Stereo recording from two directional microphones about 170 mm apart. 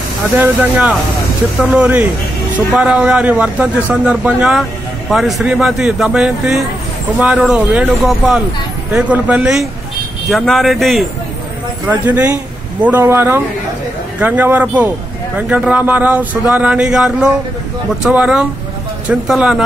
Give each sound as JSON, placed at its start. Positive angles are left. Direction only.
{"t": 0.4, "sound": "a man's voice", "side_deg": -10}